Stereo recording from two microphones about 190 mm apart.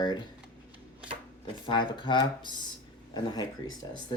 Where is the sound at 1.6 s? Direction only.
25° left (ahead or behind).